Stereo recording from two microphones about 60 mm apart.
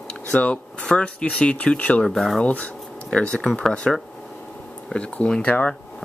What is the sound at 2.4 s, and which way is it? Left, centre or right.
Speech, left.